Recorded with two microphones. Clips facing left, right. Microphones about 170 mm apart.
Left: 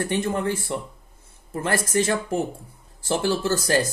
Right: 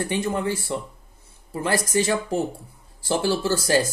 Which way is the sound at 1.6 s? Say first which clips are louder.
Even; 15° right (ahead or behind).